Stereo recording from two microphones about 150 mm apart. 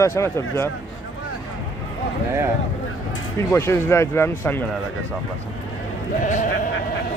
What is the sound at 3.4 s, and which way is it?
Speech, 15° left (ahead or behind).